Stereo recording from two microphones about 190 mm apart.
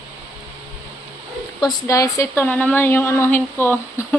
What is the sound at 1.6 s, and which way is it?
Speech, 15° left (ahead or behind).